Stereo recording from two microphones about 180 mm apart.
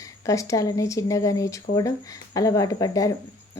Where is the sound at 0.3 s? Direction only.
20° left (ahead or behind).